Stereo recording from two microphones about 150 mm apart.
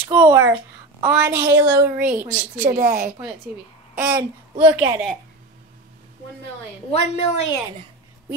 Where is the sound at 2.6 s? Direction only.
60° right (ahead or behind).